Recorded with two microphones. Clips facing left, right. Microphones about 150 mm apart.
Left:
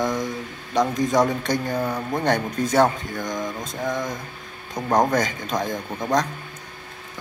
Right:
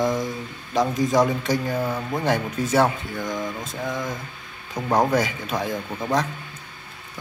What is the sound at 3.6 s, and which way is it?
Speech, 5° right (ahead or behind).